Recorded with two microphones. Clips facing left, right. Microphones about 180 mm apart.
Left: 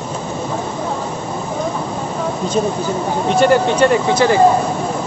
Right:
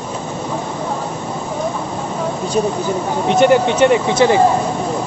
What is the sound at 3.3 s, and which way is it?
Speech, 20° right (ahead or behind).